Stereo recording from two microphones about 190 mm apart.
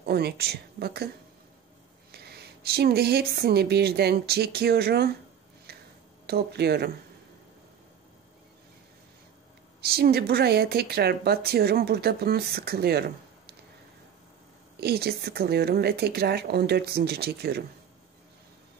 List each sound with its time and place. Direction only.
0.0 s speech: 55° right (ahead or behind)
2.1 s speech: 55° right (ahead or behind)
5.7 s a sound: 55° right (ahead or behind)
6.2 s speech: 60° right (ahead or behind)
9.8 s speech: 55° right (ahead or behind)
14.8 s speech: 55° right (ahead or behind)